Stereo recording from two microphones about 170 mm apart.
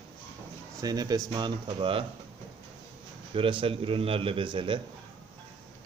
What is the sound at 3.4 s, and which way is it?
Speech, 30° right (ahead or behind).